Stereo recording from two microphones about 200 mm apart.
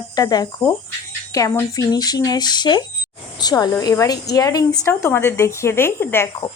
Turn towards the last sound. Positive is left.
turn(degrees=10)  # may be behind; listen again after turning